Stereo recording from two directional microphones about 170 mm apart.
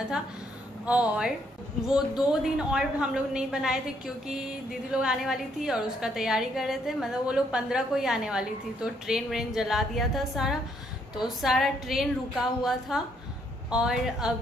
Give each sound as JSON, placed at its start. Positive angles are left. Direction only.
{"t": 0.8, "sound": "a woman's voice", "side_deg": -5}